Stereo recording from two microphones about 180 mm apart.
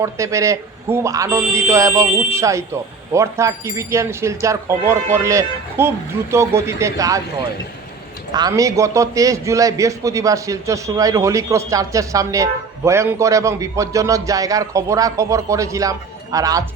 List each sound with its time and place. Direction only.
0.0 s a man's voice: 15° right (ahead or behind)
8.3 s a man's voice: 20° right (ahead or behind)